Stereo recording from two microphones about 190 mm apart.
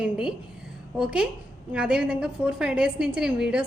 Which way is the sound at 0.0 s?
5° right (ahead or behind).